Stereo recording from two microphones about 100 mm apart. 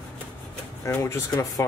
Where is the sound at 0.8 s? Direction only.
30° left (ahead or behind).